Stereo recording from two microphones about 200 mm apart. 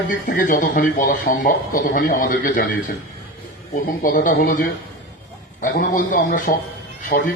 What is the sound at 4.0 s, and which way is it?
Speech, 40° left (ahead or behind).